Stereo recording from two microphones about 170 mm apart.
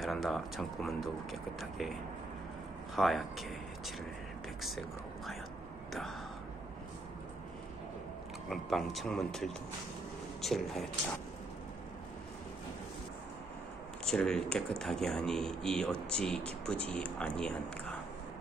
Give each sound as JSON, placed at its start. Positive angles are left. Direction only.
{"t": 0.0, "sound": "speech", "side_deg": 0}
{"t": 3.0, "sound": "speech", "side_deg": 0}
{"t": 8.5, "sound": "speech", "side_deg": 0}
{"t": 14.0, "sound": "speech", "side_deg": 5}